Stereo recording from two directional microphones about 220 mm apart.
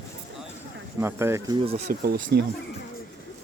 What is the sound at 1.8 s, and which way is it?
Speech, 50° right (ahead or behind).